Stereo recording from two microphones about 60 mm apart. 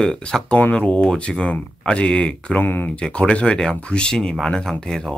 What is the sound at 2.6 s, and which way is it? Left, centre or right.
Speech, left.